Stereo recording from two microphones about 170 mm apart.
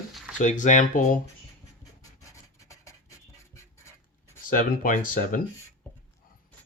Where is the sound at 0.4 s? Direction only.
45° left (ahead or behind).